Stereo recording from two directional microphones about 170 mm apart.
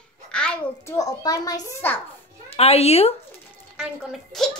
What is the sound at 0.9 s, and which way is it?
A child's voice, 20° left (ahead or behind).